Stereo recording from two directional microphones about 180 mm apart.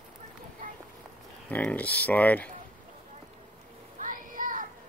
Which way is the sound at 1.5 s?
10° left (ahead or behind).